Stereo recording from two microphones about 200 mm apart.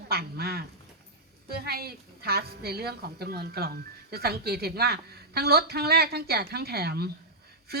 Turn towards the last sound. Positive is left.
turn(degrees=-50)  # may be behind; listen again after turning